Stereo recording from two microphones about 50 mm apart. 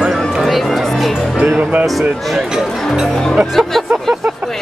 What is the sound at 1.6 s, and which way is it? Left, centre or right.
Speech, right.